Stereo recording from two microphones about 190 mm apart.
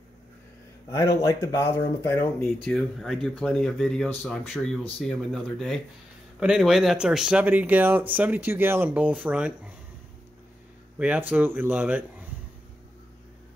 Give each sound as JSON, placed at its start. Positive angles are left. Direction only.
{"t": 0.9, "sound": "speech", "side_deg": 15}
{"t": 2.4, "sound": "speech", "side_deg": 0}
{"t": 11.0, "sound": "speech", "side_deg": -5}